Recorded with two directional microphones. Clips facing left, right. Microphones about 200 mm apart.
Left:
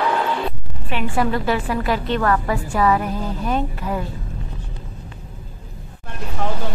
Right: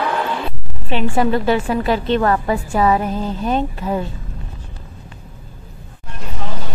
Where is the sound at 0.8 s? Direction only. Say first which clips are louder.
Right 4 dB; 30° right (ahead or behind).